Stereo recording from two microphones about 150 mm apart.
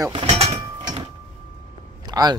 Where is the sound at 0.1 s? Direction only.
40° right (ahead or behind).